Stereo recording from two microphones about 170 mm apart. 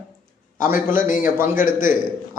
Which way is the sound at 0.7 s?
50° left (ahead or behind).